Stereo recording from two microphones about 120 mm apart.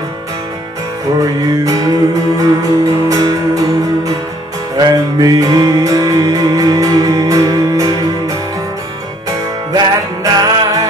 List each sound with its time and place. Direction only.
1.2 s music: 30° right (ahead or behind)
4.7 s music: 30° right (ahead or behind)
9.7 s music: 35° right (ahead or behind)